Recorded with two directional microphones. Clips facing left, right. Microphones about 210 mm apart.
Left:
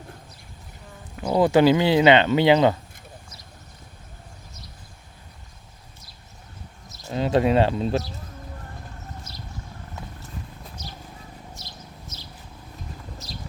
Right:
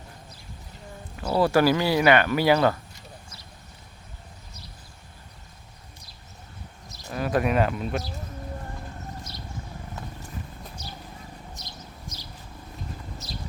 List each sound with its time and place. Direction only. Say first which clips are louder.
1.2 s speech: left 3 dB; 15° left (ahead or behind)
7.1 s speech: left 4 dB; 25° left (ahead or behind)
11.5 s bird: even; 15° right (ahead or behind)